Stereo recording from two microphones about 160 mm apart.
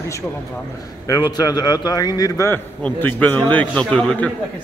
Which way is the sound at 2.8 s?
10° left (ahead or behind).